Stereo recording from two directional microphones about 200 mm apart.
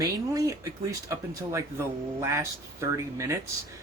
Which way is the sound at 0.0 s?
15° right (ahead or behind).